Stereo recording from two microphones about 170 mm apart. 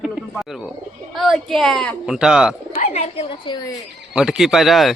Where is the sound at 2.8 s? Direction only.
40° left (ahead or behind).